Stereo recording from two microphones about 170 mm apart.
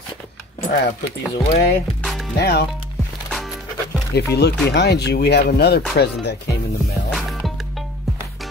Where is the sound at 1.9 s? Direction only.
Centre (ahead or behind).